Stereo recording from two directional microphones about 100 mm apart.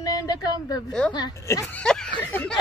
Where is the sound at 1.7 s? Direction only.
10° left (ahead or behind).